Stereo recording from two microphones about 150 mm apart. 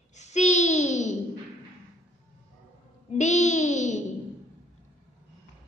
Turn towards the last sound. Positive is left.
turn(degrees=50)  # may be behind; listen again after turning